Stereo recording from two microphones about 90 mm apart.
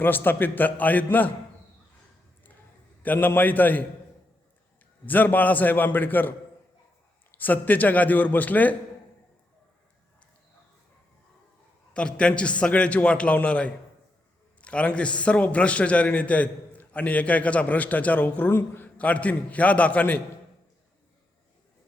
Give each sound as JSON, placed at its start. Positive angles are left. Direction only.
{"t": 0.0, "sound": "a man's voice", "side_deg": 25}
{"t": 3.0, "sound": "a man's voice", "side_deg": 20}
{"t": 5.0, "sound": "a man's voice", "side_deg": 20}
{"t": 11.9, "sound": "a man's voice", "side_deg": 10}